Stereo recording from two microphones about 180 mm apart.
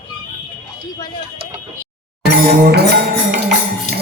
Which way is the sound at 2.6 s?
60° right (ahead or behind).